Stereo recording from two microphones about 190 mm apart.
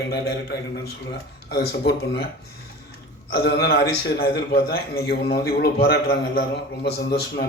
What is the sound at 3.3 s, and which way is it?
Speech, 55° left (ahead or behind).